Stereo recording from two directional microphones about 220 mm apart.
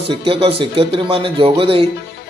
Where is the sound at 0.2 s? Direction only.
25° right (ahead or behind).